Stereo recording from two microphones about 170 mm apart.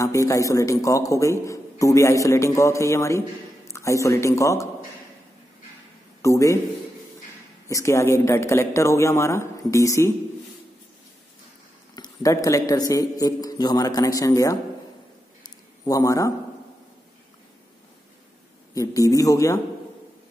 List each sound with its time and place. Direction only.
0.0 s a man's voice: 20° left (ahead or behind)
6.2 s a man's voice: 15° left (ahead or behind)
7.6 s a man's voice: 15° left (ahead or behind)
11.9 s a man's voice: 20° left (ahead or behind)
15.4 s a sound: 20° left (ahead or behind)
18.8 s a man's voice: 20° left (ahead or behind)